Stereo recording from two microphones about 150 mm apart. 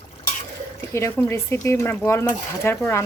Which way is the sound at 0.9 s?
15° left (ahead or behind).